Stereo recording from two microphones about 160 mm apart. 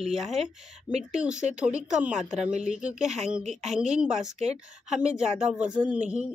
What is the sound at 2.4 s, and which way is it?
Speech, 45° right (ahead or behind).